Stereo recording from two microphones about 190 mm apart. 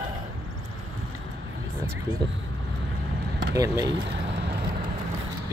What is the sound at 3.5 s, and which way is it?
Speech, 15° right (ahead or behind).